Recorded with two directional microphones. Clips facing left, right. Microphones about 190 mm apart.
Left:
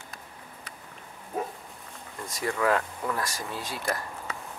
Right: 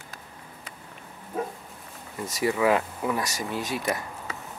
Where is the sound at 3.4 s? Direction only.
20° right (ahead or behind).